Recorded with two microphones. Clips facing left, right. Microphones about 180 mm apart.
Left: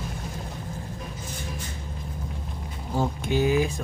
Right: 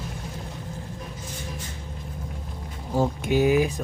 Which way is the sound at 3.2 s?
15° right (ahead or behind).